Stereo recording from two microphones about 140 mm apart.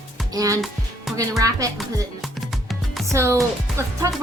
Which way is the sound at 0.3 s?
25° right (ahead or behind).